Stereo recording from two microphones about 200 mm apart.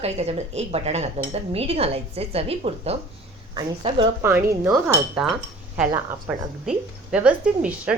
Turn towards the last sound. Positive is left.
turn(degrees=-5)  # may be behind; listen again after turning